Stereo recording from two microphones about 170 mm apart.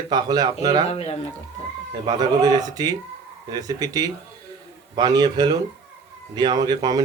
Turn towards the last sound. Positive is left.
turn(degrees=-25)  # may be behind; listen again after turning